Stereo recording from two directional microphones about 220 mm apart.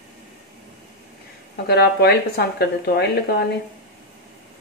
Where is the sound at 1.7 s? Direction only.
45° left (ahead or behind).